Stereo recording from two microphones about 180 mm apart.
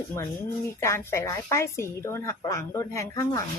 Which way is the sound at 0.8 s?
15° left (ahead or behind).